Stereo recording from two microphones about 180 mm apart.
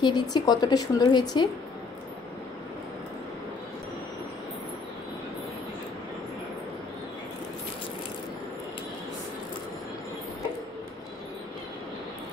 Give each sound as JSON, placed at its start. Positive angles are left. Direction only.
{"t": 0.0, "sound": "a woman's voice", "side_deg": 20}